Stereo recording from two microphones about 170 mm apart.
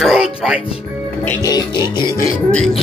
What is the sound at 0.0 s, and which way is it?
Music, 5° right (ahead or behind).